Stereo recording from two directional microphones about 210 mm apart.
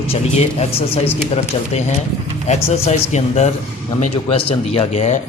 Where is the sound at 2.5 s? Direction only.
30° left (ahead or behind).